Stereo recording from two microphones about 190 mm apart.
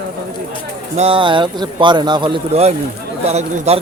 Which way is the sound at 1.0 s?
30° right (ahead or behind).